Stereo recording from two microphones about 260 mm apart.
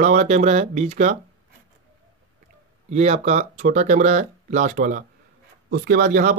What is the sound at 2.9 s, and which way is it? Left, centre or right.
Speech, right.